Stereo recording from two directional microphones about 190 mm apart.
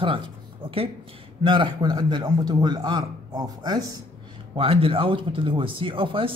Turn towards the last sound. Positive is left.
turn(degrees=-25)  # may be behind; listen again after turning